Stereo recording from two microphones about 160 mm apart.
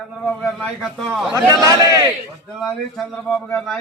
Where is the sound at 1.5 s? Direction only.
20° right (ahead or behind).